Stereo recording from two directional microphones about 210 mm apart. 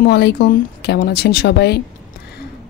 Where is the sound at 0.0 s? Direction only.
55° left (ahead or behind).